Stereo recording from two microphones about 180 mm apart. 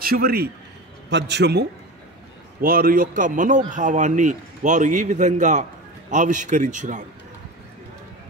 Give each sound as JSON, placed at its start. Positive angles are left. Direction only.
{"t": 0.0, "sound": "a man's voice", "side_deg": -55}
{"t": 1.1, "sound": "a man's voice", "side_deg": -70}
{"t": 2.6, "sound": "a man's voice", "side_deg": -55}